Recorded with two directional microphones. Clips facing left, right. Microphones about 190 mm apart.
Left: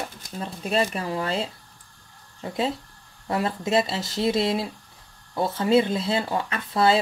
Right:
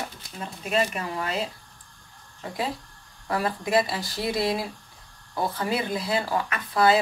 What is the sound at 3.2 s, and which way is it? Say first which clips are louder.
Speech: left 2 dB; 25° left (ahead or behind).